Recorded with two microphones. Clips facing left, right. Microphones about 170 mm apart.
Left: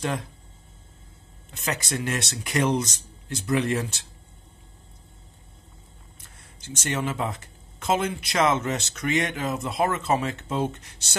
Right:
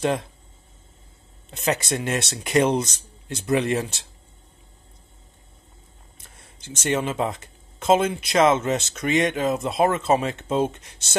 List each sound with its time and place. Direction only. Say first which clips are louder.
1.5 s speech: right 5 dB; 25° right (ahead or behind)
6.6 s speech: right 4 dB; 20° right (ahead or behind)